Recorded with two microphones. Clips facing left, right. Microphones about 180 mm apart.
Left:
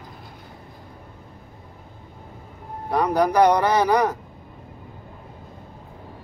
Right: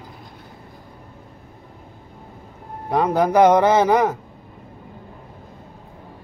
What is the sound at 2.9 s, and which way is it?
Speech, 20° right (ahead or behind).